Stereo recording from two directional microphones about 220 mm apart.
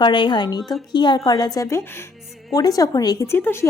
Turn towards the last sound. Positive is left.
turn(degrees=10)  # may be behind; listen again after turning